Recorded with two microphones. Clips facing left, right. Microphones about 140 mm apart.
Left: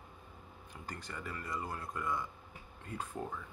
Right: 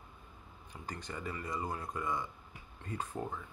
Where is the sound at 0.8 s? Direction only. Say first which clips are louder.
Right 3 dB; 5° left (ahead or behind).